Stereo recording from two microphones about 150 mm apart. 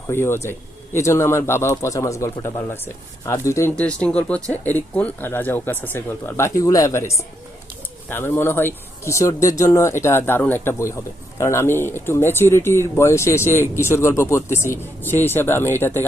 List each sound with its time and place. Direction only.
0.1 s speech: 15° left (ahead or behind)